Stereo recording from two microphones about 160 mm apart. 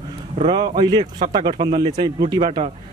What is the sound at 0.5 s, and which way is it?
A man's voice, 25° right (ahead or behind).